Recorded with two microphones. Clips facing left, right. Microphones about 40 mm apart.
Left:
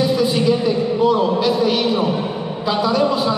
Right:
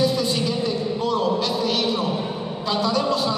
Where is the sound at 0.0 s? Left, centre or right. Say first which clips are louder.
Left 5 dB; centre.